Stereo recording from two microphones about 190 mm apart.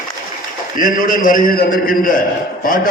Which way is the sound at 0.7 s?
45° left (ahead or behind).